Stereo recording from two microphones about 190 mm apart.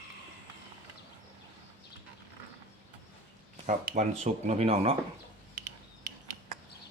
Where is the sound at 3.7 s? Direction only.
45° right (ahead or behind).